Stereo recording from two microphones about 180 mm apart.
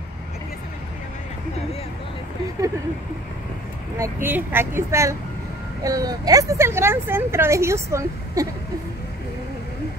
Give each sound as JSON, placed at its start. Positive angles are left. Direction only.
{"t": 4.0, "sound": "speech", "side_deg": -10}